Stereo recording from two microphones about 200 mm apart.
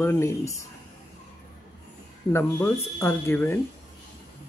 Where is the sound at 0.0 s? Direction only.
15° left (ahead or behind).